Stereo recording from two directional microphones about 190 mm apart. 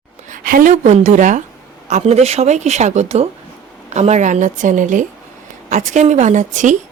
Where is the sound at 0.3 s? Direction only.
45° right (ahead or behind).